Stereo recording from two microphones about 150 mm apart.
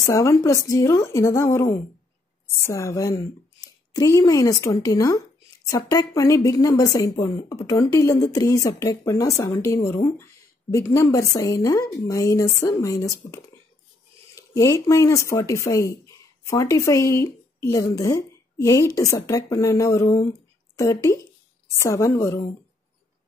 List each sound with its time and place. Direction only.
0.0 s a woman's voice: 20° left (ahead or behind)